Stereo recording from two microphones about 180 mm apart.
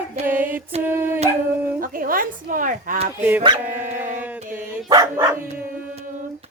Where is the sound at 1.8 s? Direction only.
50° right (ahead or behind).